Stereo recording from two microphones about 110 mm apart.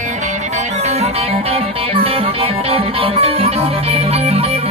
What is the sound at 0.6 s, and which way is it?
Music, 90° right.